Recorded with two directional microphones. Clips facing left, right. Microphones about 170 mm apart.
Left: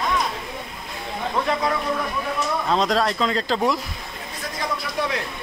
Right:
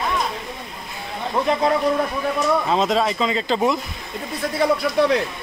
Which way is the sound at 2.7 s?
5° right (ahead or behind).